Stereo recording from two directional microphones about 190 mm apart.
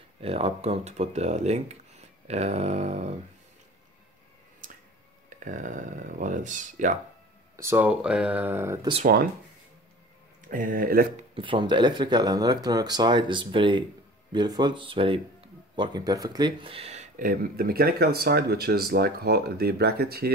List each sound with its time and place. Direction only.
0.2 s speech: 30° right (ahead or behind)
5.4 s speech: 40° right (ahead or behind)
7.5 s speech: 10° right (ahead or behind)
10.5 s speech: 45° right (ahead or behind)
11.1 s speech: 30° right (ahead or behind)
17.2 s speech: 50° right (ahead or behind)